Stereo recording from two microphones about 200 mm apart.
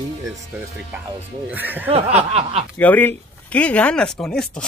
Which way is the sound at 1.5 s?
10° right (ahead or behind).